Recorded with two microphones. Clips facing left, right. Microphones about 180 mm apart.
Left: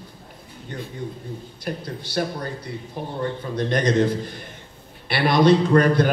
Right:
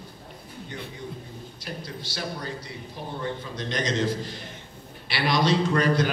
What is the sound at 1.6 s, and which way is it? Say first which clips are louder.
Speech: left 7 dB; 50° left (ahead or behind).